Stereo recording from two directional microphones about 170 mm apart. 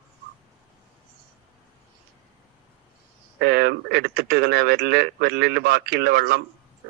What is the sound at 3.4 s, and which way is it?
A man's voice, 70° right (ahead or behind).